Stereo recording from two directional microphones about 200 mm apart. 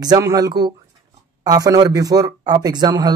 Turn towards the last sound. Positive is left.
turn(degrees=-20)  # may be behind; listen again after turning